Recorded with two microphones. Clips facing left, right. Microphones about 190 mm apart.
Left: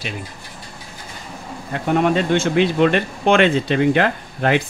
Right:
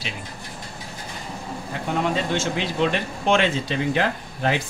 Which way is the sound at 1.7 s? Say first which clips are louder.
Left 7 dB; 60° left (ahead or behind).